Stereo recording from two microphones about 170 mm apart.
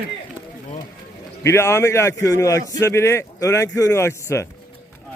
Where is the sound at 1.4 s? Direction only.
15° left (ahead or behind).